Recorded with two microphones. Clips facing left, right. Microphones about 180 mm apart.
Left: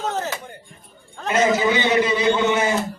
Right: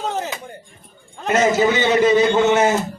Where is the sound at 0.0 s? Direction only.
15° right (ahead or behind).